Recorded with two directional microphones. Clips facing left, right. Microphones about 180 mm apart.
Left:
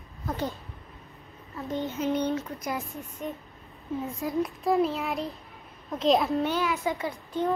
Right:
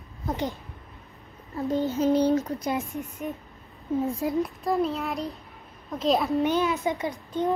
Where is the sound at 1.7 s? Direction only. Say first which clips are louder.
Right 5 dB; 35° right (ahead or behind).